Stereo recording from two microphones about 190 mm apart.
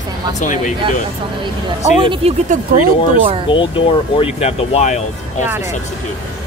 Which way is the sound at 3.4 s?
25° left (ahead or behind).